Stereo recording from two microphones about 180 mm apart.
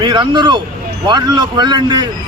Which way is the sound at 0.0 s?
25° right (ahead or behind).